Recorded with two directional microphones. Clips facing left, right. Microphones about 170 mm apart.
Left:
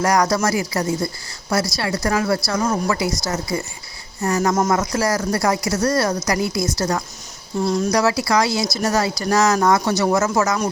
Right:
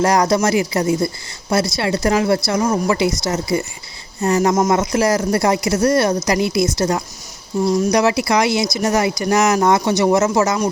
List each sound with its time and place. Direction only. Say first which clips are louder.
0.0 s speech: right 3 dB; 25° right (ahead or behind)